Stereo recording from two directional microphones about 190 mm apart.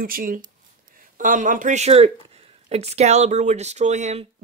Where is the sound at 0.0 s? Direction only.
45° right (ahead or behind).